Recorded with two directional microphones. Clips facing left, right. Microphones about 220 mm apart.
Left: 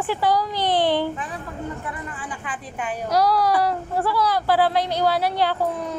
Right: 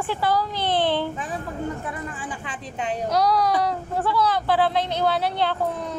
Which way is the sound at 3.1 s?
5° left (ahead or behind).